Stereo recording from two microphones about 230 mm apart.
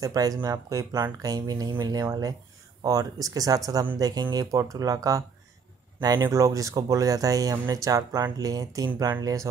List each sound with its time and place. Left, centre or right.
0.0 s speech: centre